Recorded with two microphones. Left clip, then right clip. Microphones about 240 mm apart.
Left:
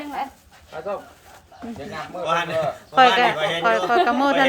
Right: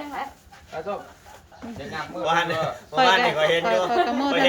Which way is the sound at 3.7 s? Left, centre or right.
Centre.